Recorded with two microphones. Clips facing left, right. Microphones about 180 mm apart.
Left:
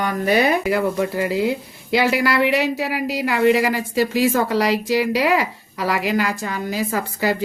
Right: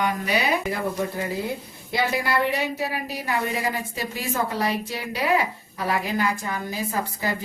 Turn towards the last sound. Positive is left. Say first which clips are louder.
# left 5 dB
turn(degrees=90)